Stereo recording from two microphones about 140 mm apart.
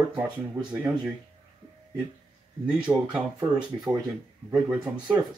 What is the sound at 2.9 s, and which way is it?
Speech, 20° right (ahead or behind).